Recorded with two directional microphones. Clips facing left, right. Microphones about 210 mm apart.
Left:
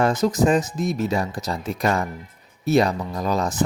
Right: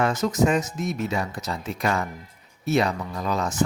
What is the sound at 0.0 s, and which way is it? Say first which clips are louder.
Speech: left 3 dB; 35° left (ahead or behind).